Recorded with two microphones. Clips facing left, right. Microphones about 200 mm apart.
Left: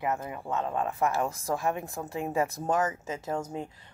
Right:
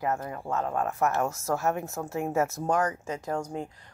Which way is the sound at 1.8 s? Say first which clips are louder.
Right 2 dB; centre (ahead or behind).